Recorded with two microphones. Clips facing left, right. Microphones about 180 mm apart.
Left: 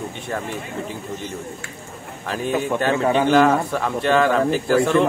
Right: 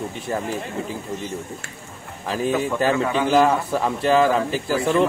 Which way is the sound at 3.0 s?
35° left (ahead or behind).